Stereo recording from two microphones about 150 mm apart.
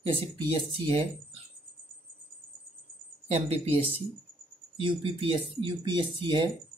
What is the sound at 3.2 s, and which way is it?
Speech, 40° right (ahead or behind).